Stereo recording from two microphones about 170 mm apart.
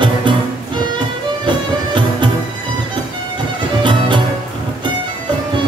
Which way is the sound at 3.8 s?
30° right (ahead or behind).